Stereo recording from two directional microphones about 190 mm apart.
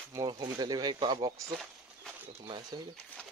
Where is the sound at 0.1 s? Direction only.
20° right (ahead or behind).